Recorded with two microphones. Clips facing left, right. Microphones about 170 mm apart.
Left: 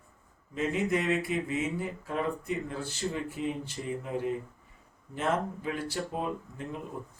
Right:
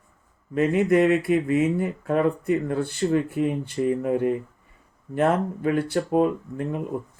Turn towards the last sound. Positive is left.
turn(degrees=-55)  # may be behind; listen again after turning